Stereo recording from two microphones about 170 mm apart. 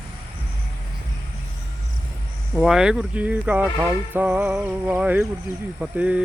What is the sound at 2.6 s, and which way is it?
Speech, 5° right (ahead or behind).